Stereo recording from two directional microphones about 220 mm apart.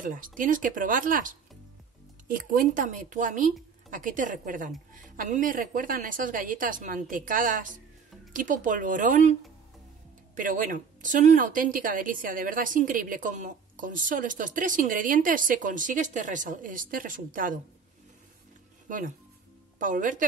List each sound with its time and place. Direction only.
0.0 s speech: 35° right (ahead or behind)
10.3 s speech: 35° right (ahead or behind)
18.9 s speech: 35° right (ahead or behind)